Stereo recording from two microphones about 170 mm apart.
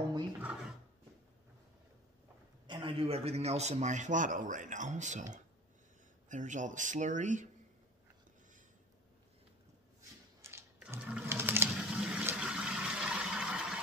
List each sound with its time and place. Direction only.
2.6 s a man's voice: 30° right (ahead or behind); by 7.4 s 45° right (ahead or behind)
10.4 s sewing machine: 15° right (ahead or behind)